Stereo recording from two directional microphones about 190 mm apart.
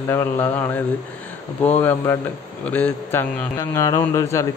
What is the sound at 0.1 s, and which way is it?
Speech, 10° left (ahead or behind).